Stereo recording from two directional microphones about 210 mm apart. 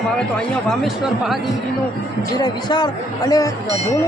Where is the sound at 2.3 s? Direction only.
20° left (ahead or behind).